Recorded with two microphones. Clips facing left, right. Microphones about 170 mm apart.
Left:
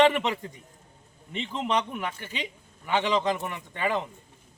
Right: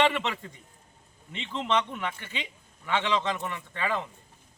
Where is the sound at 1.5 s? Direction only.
15° left (ahead or behind).